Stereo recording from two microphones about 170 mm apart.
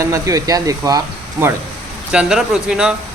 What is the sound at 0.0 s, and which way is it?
Speech, 20° right (ahead or behind).